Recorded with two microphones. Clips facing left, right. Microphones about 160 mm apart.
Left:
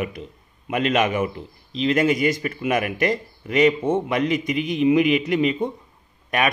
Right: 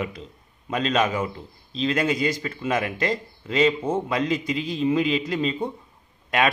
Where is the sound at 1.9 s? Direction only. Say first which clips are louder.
Left 5 dB; 20° left (ahead or behind).